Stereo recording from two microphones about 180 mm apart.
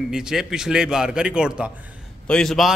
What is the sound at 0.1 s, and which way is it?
Speech, 5° right (ahead or behind).